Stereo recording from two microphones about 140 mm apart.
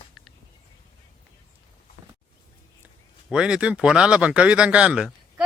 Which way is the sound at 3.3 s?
5° right (ahead or behind).